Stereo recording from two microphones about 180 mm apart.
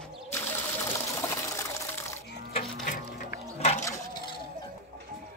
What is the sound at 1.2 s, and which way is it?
Water, 15° left (ahead or behind).